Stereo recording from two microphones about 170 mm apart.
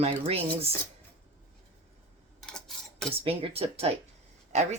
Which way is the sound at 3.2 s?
35° right (ahead or behind).